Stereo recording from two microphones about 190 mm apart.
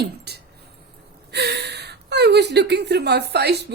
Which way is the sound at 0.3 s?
60° right (ahead or behind).